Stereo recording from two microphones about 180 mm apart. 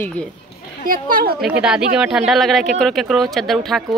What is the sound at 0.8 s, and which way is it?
Speech, 50° right (ahead or behind).